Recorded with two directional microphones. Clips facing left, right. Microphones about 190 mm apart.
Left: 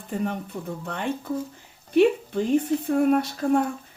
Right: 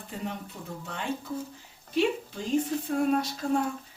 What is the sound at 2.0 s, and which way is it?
A woman's voice, 60° left (ahead or behind).